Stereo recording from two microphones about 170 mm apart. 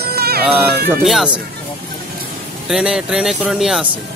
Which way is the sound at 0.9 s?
Centre (ahead or behind).